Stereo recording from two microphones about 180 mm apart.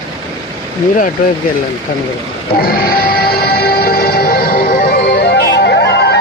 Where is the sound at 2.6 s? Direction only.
55° left (ahead or behind).